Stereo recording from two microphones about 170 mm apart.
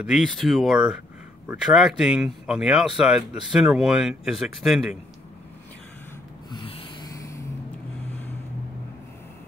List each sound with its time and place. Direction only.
0.0 s speech: centre (ahead or behind)
6.5 s a sound: 30° left (ahead or behind)
7.1 s vehicle: 20° left (ahead or behind)